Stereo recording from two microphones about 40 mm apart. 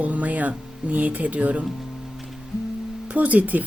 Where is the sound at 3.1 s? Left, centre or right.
Right.